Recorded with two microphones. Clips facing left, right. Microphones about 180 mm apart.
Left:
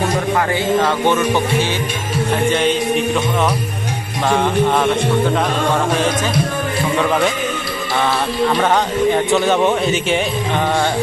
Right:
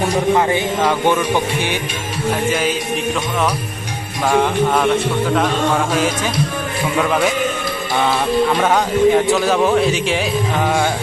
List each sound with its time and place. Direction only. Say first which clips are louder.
0.3 s music: even; 15° right (ahead or behind)
2.5 s music: left 4 dB; 5° right (ahead or behind)
4.3 s a man's voice: even; centre (ahead or behind)
7.0 s a man's voice: even; centre (ahead or behind)
8.6 s a man's voice: right 2 dB; 5° right (ahead or behind)